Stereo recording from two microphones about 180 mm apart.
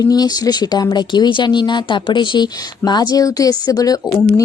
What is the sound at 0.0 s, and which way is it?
Speech, 20° left (ahead or behind).